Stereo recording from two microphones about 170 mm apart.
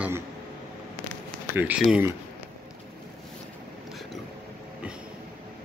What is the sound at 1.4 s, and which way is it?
Speech, 10° right (ahead or behind).